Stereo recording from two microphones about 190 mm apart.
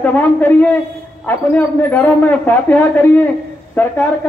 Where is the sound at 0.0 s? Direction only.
10° left (ahead or behind).